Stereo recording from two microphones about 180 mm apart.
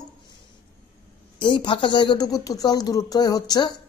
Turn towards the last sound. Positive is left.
turn(degrees=20)  # may be behind; listen again after turning